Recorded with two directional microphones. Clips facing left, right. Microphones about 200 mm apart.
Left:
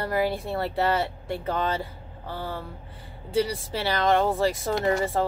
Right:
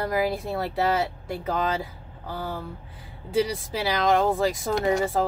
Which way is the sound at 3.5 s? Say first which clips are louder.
Right 1 dB; centre (ahead or behind).